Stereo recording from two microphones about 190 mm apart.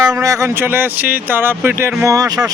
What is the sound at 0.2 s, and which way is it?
Speech, 15° right (ahead or behind).